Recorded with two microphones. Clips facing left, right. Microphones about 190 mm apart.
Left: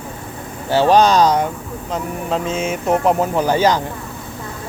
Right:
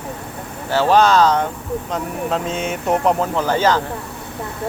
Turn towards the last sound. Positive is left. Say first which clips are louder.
# left 2 dB
turn(degrees=15)  # may be behind; listen again after turning